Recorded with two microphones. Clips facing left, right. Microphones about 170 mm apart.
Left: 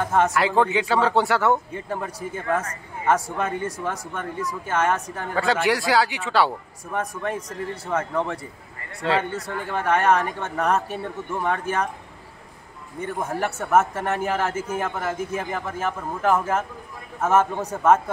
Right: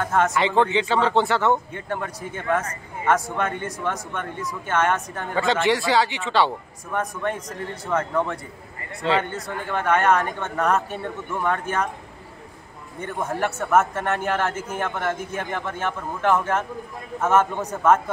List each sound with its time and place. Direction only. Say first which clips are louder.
0.0 s a woman's voice: even; 10° left (ahead or behind)
3.5 s speech: left 3 dB; 30° left (ahead or behind)
3.8 s a woman's voice: right 1 dB; 5° left (ahead or behind)
7.4 s speech: left 1 dB; 30° left (ahead or behind)
7.9 s a man's voice: right 2 dB; 5° left (ahead or behind)
13.0 s a woman's voice: even; 5° left (ahead or behind)